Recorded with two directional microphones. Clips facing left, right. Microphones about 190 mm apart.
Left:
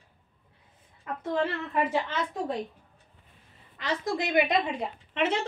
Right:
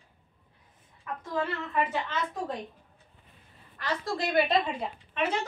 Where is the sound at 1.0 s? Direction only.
25° left (ahead or behind).